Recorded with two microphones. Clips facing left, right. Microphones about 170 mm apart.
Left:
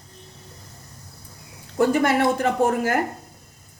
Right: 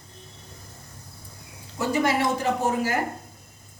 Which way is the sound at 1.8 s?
55° left (ahead or behind).